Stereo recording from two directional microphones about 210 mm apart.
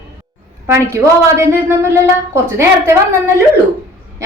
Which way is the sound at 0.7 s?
10° right (ahead or behind).